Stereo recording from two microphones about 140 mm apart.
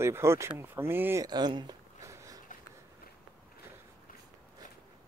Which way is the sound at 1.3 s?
30° right (ahead or behind).